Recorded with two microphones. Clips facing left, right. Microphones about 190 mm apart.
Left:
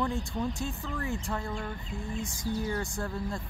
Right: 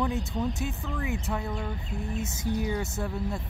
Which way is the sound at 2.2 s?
25° right (ahead or behind).